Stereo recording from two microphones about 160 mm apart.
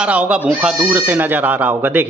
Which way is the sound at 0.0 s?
10° right (ahead or behind).